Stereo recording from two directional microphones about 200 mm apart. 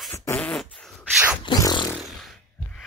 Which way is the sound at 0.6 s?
Centre (ahead or behind).